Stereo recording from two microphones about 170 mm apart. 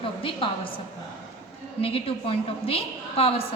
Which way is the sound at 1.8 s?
35° left (ahead or behind).